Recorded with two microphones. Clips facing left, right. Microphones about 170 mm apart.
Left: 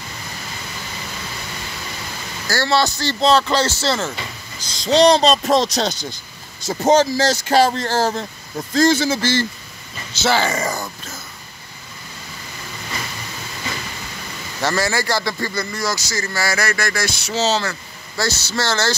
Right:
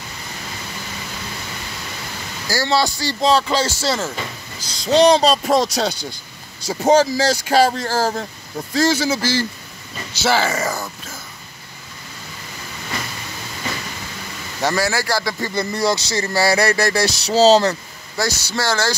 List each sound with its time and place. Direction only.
2.4 s speech: 10° right (ahead or behind)
14.6 s speech: 10° right (ahead or behind)
15.5 s speech: 30° right (ahead or behind)
18.1 s speech: 15° right (ahead or behind)